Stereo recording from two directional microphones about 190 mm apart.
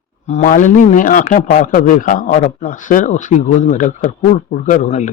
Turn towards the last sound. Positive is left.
turn(degrees=35)  # may be behind; listen again after turning